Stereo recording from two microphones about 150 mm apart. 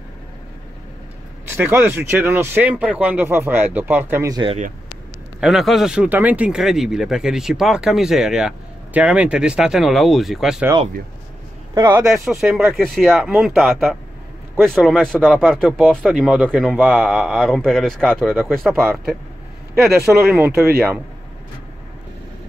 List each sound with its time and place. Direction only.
1.5 s speech: 15° right (ahead or behind)
5.4 s speech: centre (ahead or behind)
11.7 s a man's voice: 25° right (ahead or behind)
12.0 s speech: centre (ahead or behind)
18.2 s speech: 10° right (ahead or behind)
18.5 s speech: centre (ahead or behind)
20.2 s speech: 15° right (ahead or behind)